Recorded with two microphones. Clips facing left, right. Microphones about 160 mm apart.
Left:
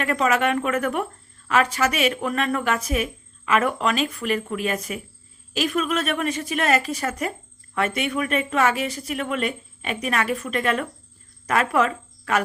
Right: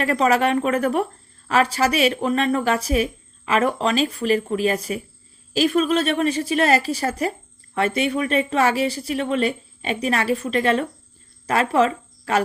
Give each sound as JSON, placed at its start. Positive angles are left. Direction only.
{"t": 0.0, "sound": "a woman's voice", "side_deg": -35}